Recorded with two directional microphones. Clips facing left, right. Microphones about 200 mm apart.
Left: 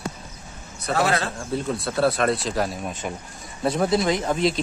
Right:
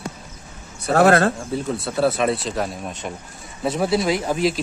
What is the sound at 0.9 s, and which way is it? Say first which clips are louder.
Speech: right 8 dB; 55° right (ahead or behind).